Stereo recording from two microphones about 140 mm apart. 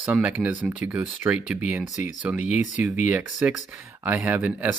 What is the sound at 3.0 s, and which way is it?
Speech, 10° right (ahead or behind).